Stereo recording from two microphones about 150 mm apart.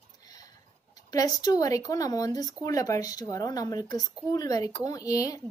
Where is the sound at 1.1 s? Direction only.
25° left (ahead or behind).